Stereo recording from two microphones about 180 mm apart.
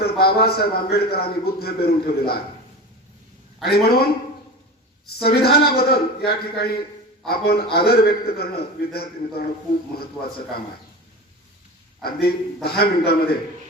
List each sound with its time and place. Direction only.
0.0 s a man's voice: 60° left (ahead or behind)
3.6 s a man's voice: 60° left (ahead or behind)
5.2 s a man's voice: 60° left (ahead or behind)
12.6 s a man's voice: 60° left (ahead or behind)